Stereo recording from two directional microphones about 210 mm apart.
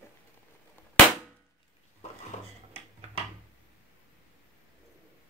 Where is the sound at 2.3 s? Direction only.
35° left (ahead or behind).